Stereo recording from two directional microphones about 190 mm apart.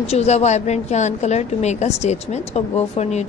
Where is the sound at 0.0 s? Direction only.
35° left (ahead or behind).